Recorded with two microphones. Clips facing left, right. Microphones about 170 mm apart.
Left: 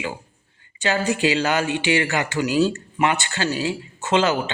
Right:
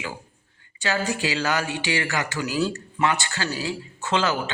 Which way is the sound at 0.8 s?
20° left (ahead or behind).